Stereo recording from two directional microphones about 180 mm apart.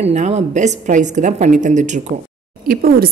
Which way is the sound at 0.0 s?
40° right (ahead or behind).